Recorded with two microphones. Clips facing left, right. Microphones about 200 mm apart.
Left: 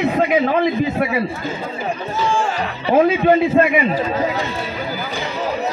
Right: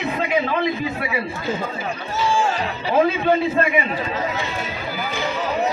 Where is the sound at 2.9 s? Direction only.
50° left (ahead or behind).